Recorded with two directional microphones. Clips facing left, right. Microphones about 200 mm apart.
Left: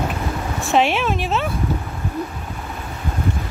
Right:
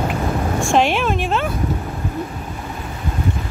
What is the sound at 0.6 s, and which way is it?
Speech, centre (ahead or behind).